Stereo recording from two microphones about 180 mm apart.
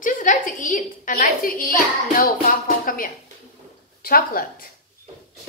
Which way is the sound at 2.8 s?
50° left (ahead or behind).